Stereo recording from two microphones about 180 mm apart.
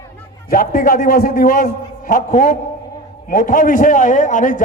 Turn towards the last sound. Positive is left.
turn(degrees=45)  # may be behind; listen again after turning